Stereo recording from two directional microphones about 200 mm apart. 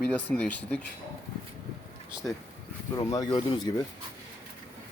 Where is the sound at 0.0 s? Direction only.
5° left (ahead or behind).